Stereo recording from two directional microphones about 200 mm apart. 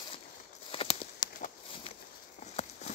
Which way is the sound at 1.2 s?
40° left (ahead or behind).